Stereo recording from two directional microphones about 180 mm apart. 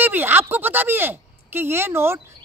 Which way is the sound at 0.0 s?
10° right (ahead or behind).